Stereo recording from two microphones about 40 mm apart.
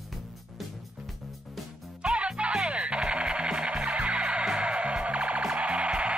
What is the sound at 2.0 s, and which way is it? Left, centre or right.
Music, right.